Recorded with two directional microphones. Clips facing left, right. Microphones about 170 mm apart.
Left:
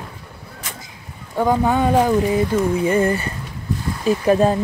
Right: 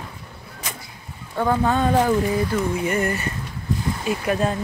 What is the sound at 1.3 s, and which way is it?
Speech, 15° left (ahead or behind).